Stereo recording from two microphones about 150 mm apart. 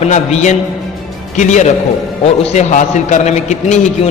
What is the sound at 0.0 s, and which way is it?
A man's voice, 50° left (ahead or behind).